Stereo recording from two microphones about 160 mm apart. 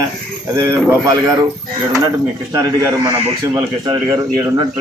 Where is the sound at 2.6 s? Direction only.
20° right (ahead or behind).